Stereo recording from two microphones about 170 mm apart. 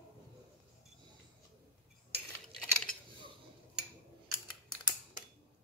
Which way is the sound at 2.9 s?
55° left (ahead or behind).